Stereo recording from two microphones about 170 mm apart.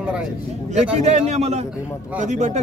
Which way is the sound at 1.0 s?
40° right (ahead or behind).